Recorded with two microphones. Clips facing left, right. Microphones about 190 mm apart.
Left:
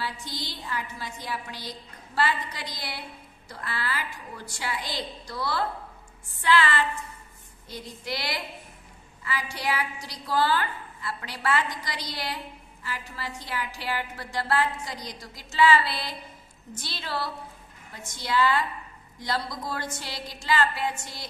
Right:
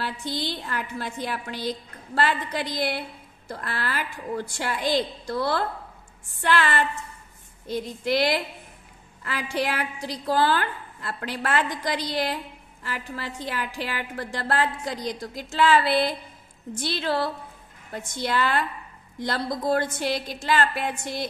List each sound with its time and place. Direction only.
0.4 s a woman's voice: 60° right (ahead or behind)